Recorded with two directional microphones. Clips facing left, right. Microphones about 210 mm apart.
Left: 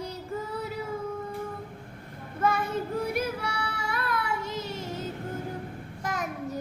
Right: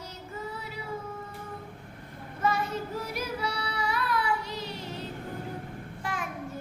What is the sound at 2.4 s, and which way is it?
Child singing, 50° left (ahead or behind).